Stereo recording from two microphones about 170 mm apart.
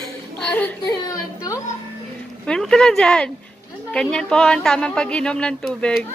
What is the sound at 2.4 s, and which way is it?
Speech, 5° left (ahead or behind).